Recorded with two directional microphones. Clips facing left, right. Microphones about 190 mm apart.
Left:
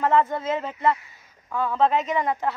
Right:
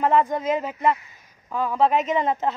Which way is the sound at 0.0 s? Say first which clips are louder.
Right 1 dB; 15° right (ahead or behind).